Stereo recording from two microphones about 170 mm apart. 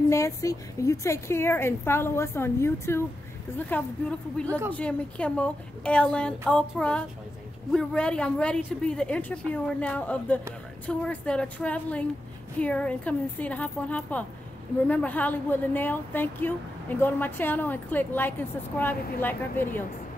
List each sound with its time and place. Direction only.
0.1 s a woman's voice: 20° left (ahead or behind)